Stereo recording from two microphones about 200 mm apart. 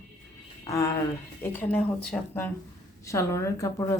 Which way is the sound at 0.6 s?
15° left (ahead or behind).